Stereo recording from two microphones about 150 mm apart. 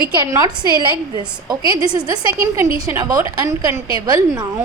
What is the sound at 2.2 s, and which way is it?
Speech, 20° right (ahead or behind).